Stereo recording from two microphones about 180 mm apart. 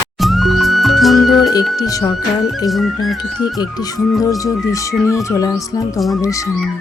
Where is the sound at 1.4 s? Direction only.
20° left (ahead or behind).